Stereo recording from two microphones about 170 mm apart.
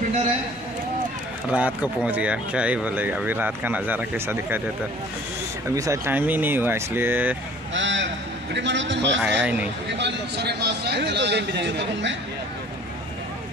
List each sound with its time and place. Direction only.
1.5 s speech: 5° right (ahead or behind)
5.7 s speech: 15° right (ahead or behind)
7.7 s a man's voice: 90° right
9.2 s speech: 10° right (ahead or behind)
9.8 s a man's voice: 90° right